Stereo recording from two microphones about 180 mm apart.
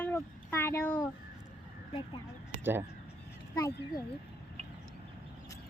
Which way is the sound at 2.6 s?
10° right (ahead or behind).